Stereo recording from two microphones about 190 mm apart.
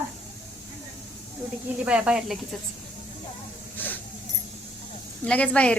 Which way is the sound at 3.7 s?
10° left (ahead or behind).